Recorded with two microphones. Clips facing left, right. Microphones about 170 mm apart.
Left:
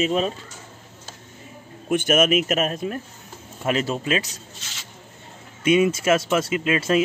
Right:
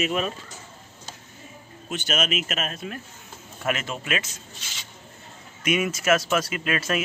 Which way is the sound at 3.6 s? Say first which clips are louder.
Left 5 dB; 35° left (ahead or behind).